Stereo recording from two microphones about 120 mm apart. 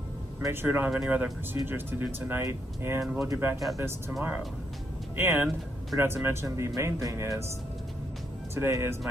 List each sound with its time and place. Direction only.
0.5 s speech: 15° right (ahead or behind)
3.0 s speech: 5° right (ahead or behind)
3.3 s speech: 20° right (ahead or behind)
5.1 s speech: 20° right (ahead or behind)
8.5 s speech: 20° right (ahead or behind)